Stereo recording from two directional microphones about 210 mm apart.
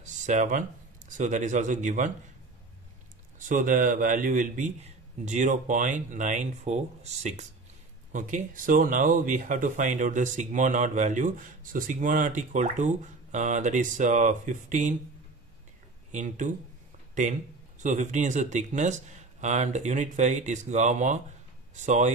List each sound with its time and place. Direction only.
0.0 s speech: 35° right (ahead or behind)
3.3 s speech: 40° right (ahead or behind)
16.1 s speech: 35° right (ahead or behind)